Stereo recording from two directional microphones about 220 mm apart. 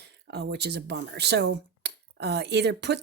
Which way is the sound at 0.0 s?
50° right (ahead or behind).